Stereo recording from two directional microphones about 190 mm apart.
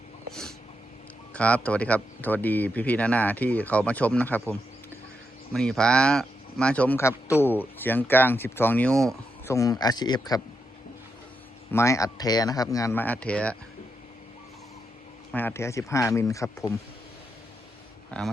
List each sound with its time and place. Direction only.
1.3 s speech: 5° left (ahead or behind)
5.5 s speech: 5° left (ahead or behind)
9.5 s a man's voice: 20° left (ahead or behind)
11.7 s speech: 15° left (ahead or behind)
15.3 s speech: 10° left (ahead or behind)